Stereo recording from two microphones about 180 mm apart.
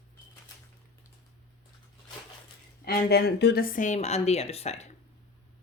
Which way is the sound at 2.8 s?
60° left (ahead or behind).